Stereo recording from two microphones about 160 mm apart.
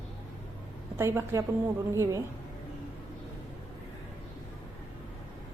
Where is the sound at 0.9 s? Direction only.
15° right (ahead or behind).